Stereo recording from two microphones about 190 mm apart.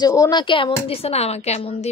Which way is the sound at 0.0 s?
20° left (ahead or behind).